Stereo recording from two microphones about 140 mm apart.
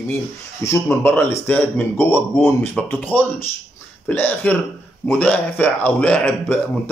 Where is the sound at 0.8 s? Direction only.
15° left (ahead or behind).